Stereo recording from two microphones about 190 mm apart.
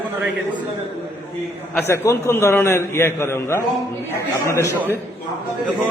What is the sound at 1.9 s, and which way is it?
A man's voice, 15° left (ahead or behind).